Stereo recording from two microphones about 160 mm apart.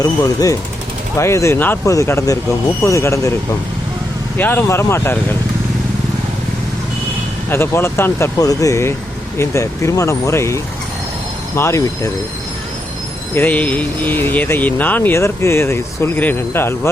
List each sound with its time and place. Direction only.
0.0 s speech: 20° left (ahead or behind)
4.4 s speech: 10° left (ahead or behind)
7.5 s speech: 15° left (ahead or behind)
13.3 s speech: 10° left (ahead or behind)